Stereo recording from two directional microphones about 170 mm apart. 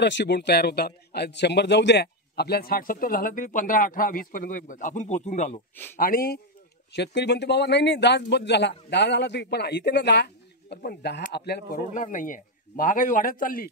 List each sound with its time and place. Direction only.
0.0 s speech: 90° left; by 5.6 s 40° left (ahead or behind)
5.9 s speech: 60° left (ahead or behind)
6.9 s speech: 90° left
10.8 s speech: 70° left (ahead or behind)
11.9 s a man's voice: 50° left (ahead or behind)